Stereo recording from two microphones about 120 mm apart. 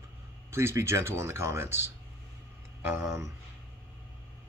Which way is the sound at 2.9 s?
20° right (ahead or behind).